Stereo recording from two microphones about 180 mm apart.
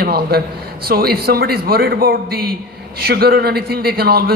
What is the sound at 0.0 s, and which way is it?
A man's voice, 60° right (ahead or behind).